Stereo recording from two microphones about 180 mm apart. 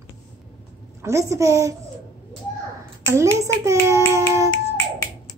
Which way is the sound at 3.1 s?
15° right (ahead or behind).